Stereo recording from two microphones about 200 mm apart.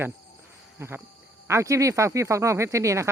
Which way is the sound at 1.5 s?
15° right (ahead or behind).